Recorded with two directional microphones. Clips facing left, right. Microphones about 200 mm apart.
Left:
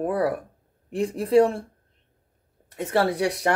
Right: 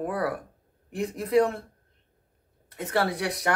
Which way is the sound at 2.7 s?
30° left (ahead or behind).